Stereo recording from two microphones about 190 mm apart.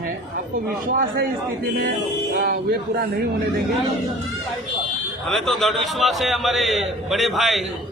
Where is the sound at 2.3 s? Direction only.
50° right (ahead or behind).